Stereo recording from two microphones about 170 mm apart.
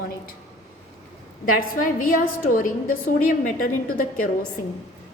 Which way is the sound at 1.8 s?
55° left (ahead or behind).